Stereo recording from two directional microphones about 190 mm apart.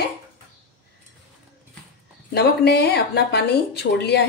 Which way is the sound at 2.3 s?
60° left (ahead or behind).